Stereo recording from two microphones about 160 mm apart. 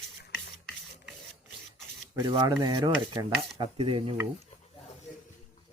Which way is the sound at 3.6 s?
35° right (ahead or behind).